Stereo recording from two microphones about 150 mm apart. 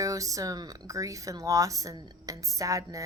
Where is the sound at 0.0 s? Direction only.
20° right (ahead or behind).